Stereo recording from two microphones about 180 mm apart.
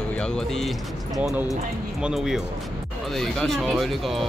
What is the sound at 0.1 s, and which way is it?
Speech, 5° left (ahead or behind).